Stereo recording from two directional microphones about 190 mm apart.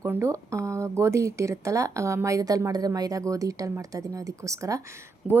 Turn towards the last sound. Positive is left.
turn(degrees=-5)  # may be behind; listen again after turning